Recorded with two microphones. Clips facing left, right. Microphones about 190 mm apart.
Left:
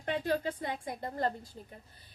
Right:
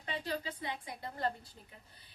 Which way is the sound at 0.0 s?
50° left (ahead or behind).